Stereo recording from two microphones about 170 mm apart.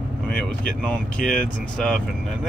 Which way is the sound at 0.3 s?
5° left (ahead or behind).